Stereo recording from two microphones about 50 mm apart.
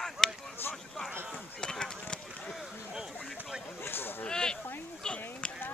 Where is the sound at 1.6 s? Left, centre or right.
Centre.